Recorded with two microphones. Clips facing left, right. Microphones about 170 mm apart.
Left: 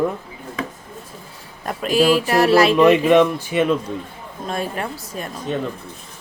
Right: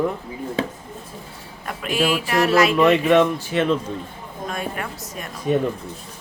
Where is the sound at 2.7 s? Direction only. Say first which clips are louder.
Left 3 dB; 20° left (ahead or behind).